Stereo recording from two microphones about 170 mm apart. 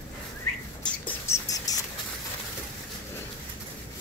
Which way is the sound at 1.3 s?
20° left (ahead or behind).